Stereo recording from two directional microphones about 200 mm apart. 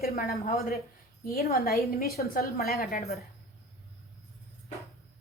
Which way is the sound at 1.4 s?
50° left (ahead or behind).